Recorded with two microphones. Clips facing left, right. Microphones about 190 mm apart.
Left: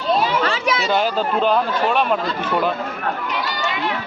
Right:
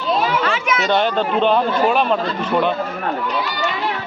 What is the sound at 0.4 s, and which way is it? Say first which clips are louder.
Children playing: right 1 dB; 35° left (ahead or behind).